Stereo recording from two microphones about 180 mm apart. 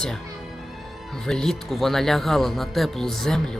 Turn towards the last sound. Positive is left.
turn(degrees=5)  # may be behind; listen again after turning